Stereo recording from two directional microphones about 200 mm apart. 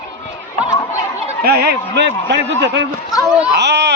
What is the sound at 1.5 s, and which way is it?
A man's voice, 55° right (ahead or behind).